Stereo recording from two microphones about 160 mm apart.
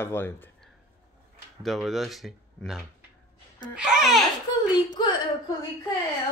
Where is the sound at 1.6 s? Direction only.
Centre (ahead or behind).